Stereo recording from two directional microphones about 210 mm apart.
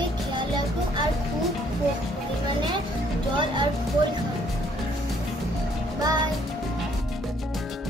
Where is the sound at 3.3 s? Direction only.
20° right (ahead or behind).